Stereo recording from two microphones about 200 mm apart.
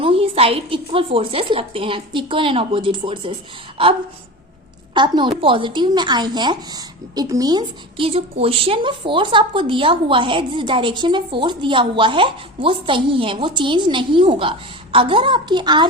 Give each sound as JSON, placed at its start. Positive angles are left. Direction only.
{"t": 0.0, "sound": "a woman's voice", "side_deg": -30}
{"t": 4.9, "sound": "a woman's voice", "side_deg": -25}